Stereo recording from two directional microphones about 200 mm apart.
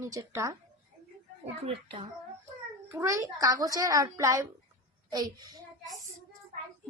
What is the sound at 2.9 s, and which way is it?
A woman's voice, 15° right (ahead or behind).